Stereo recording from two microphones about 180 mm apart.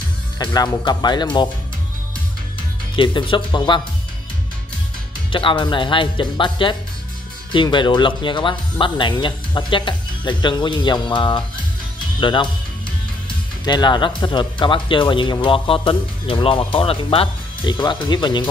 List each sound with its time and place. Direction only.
0.5 s speech: 20° left (ahead or behind)
3.0 s speech: 25° left (ahead or behind)
5.3 s speech: 25° left (ahead or behind)
13.7 s speech: 25° left (ahead or behind)